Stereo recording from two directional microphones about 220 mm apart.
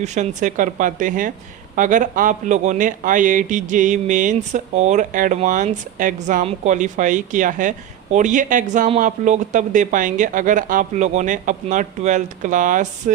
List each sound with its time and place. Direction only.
0.0 s speech: 30° right (ahead or behind)